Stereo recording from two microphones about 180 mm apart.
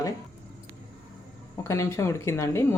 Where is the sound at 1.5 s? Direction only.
15° left (ahead or behind).